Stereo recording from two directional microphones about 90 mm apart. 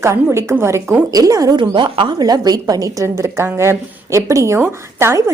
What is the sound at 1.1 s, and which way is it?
Speech, 40° right (ahead or behind).